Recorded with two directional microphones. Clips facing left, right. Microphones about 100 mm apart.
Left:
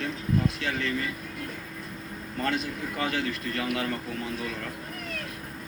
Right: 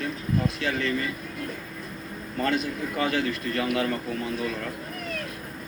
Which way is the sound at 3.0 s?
45° right (ahead or behind).